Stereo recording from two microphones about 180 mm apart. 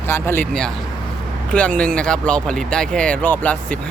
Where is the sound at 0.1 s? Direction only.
10° left (ahead or behind).